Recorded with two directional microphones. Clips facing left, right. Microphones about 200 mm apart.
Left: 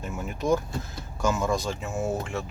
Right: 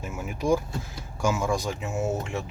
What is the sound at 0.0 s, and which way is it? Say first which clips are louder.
Speech: even; 5° right (ahead or behind).